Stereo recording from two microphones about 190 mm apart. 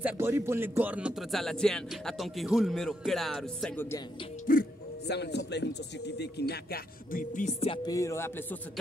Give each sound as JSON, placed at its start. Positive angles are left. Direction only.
{"t": 0.0, "sound": "speech", "side_deg": -15}
{"t": 4.5, "sound": "speech", "side_deg": 55}
{"t": 7.6, "sound": "speech", "side_deg": 25}